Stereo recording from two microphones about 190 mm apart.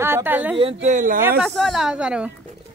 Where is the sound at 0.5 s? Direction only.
35° right (ahead or behind).